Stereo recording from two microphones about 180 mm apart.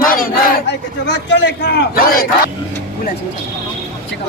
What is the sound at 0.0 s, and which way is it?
Battle cry, 50° left (ahead or behind).